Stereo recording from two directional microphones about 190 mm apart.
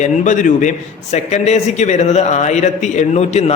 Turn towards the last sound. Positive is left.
turn(degrees=35)  # may be behind; listen again after turning